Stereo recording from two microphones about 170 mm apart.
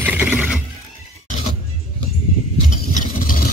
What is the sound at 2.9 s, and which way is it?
Vehicle, 55° left (ahead or behind).